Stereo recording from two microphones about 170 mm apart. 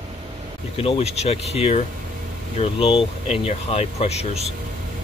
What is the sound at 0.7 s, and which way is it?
Speech, 35° left (ahead or behind).